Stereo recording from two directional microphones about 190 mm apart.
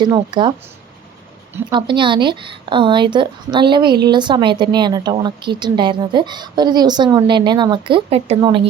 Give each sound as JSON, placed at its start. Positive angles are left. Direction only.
{"t": 0.0, "sound": "a woman's voice", "side_deg": -20}
{"t": 1.7, "sound": "a woman's voice", "side_deg": -25}